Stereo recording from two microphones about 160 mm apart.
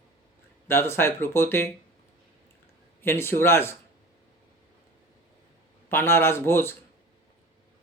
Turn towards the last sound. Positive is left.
turn(degrees=15)  # may be behind; listen again after turning